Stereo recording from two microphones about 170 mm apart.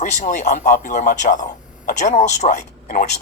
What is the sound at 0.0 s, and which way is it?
Speech, 45° left (ahead or behind).